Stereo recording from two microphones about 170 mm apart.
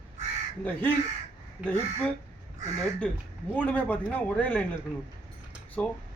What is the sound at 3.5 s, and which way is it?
A man's voice, 10° left (ahead or behind).